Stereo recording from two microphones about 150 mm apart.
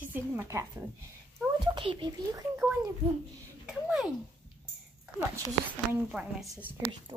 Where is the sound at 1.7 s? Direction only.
35° right (ahead or behind).